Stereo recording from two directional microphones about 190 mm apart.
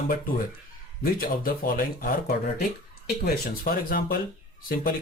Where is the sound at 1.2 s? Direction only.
50° left (ahead or behind).